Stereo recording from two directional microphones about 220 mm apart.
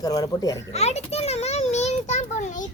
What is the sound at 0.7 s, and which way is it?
Speech, 30° left (ahead or behind).